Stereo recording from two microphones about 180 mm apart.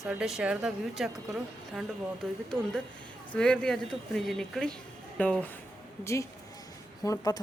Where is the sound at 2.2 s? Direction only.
5° left (ahead or behind).